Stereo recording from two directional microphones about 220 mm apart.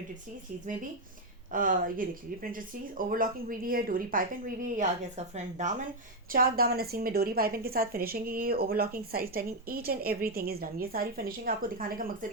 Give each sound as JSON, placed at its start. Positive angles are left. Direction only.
{"t": 1.5, "sound": "a woman's voice", "side_deg": -40}